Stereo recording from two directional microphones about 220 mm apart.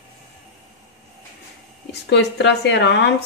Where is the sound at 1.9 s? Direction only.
50° left (ahead or behind).